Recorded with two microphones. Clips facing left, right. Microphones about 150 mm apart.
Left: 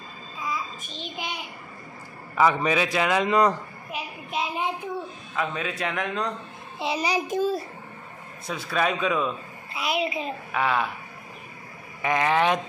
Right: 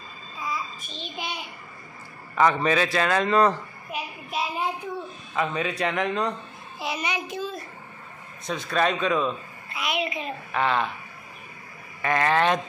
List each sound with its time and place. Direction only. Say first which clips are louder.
0.5 s child singing: left 1 dB; 15° left (ahead or behind)
2.3 s a sound: even; 10° left (ahead or behind)
5.3 s a man's voice: right 3 dB; centre (ahead or behind)
6.8 s a child's voice: left 4 dB; 30° left (ahead or behind)
8.5 s a man's voice: right 1 dB; 5° left (ahead or behind)
9.7 s a child's voice: left 2 dB; 30° left (ahead or behind)
10.5 s a man's voice: right 1 dB; 10° left (ahead or behind)
12.0 s a man's voice: even; 15° left (ahead or behind)